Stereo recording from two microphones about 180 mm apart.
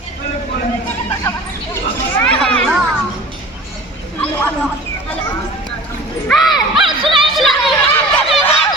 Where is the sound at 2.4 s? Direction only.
5° left (ahead or behind).